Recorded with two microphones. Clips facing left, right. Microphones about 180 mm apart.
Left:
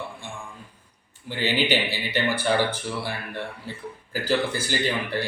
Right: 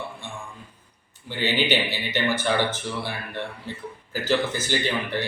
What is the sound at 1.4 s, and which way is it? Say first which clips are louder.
Speech: even; 10° left (ahead or behind).